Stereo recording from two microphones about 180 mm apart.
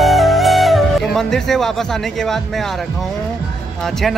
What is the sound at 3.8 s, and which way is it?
Speech, centre (ahead or behind).